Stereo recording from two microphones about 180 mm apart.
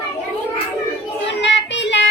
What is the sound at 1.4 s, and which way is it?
Child singing, 80° left.